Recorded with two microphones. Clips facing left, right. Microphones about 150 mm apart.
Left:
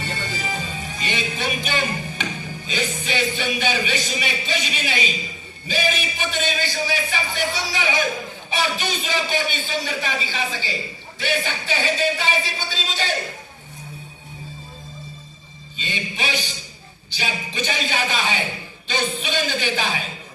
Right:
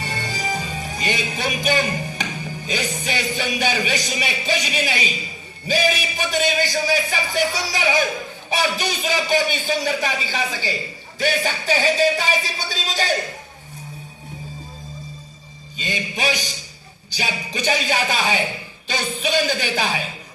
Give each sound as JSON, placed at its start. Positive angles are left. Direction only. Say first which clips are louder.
{"t": 0.0, "sound": "music", "louder": "right 1 dB", "side_deg": -40}
{"t": 15.8, "sound": "music", "louder": "right 4 dB", "side_deg": -40}